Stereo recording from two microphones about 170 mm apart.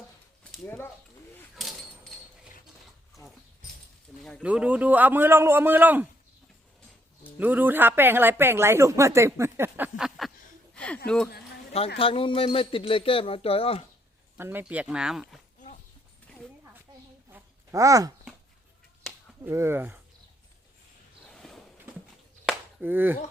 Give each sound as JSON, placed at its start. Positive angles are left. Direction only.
{"t": 1.5, "sound": "a sound", "side_deg": 0}
{"t": 4.2, "sound": "speech", "side_deg": 0}
{"t": 7.3, "sound": "speech", "side_deg": -10}
{"t": 11.9, "sound": "speech", "side_deg": 30}
{"t": 14.3, "sound": "speech", "side_deg": -10}
{"t": 17.3, "sound": "a sound", "side_deg": -15}
{"t": 19.4, "sound": "speech", "side_deg": -15}
{"t": 21.2, "sound": "a sound", "side_deg": 0}
{"t": 22.4, "sound": "chop", "side_deg": -10}